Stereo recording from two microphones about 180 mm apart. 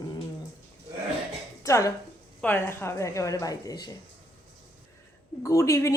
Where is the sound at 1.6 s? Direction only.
15° left (ahead or behind).